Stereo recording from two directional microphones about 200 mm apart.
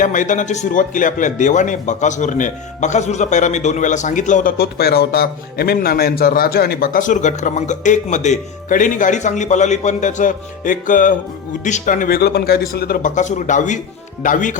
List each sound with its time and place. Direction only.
0.0 s a man's voice: 40° left (ahead or behind)